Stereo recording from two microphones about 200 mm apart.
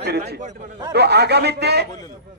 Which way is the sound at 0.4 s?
40° right (ahead or behind).